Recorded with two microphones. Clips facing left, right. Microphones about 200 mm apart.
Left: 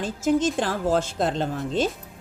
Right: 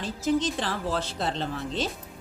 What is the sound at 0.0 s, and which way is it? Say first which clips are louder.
A woman's voice: left 4 dB; 45° left (ahead or behind).